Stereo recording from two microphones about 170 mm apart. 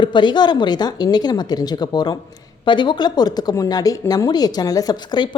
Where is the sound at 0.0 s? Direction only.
25° left (ahead or behind).